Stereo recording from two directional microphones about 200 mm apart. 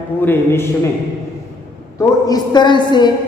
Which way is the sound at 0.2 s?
10° left (ahead or behind).